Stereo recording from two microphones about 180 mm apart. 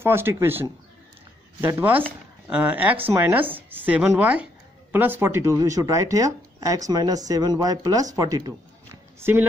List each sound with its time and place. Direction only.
0.0 s speech: 15° right (ahead or behind)
9.2 s speech: 10° right (ahead or behind)